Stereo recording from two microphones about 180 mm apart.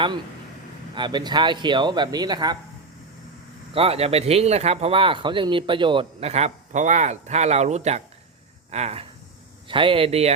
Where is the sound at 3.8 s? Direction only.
35° right (ahead or behind).